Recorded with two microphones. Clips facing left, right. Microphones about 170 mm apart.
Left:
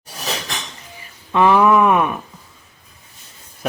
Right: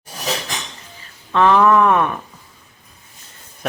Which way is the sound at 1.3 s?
10° left (ahead or behind).